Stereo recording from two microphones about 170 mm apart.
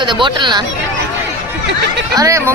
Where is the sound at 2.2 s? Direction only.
20° right (ahead or behind).